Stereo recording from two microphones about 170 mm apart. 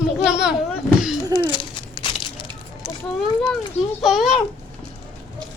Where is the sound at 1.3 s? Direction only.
25° left (ahead or behind).